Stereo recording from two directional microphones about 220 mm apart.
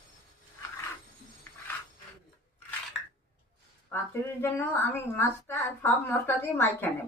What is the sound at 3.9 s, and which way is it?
A woman's voice, 10° left (ahead or behind).